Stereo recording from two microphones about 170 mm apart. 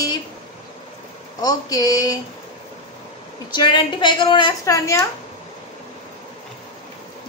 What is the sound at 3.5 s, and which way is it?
A woman's voice, 25° left (ahead or behind).